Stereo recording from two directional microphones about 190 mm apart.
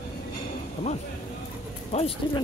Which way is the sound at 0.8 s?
25° left (ahead or behind).